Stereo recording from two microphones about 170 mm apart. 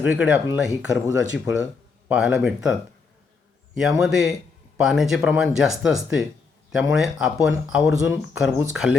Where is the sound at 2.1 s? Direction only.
5° right (ahead or behind).